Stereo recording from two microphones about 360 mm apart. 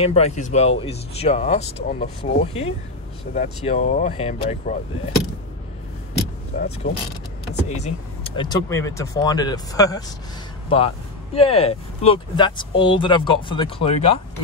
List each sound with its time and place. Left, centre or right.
0.0 s speech: centre
6.5 s speech: left; by 10.0 s centre
11.3 s speech: centre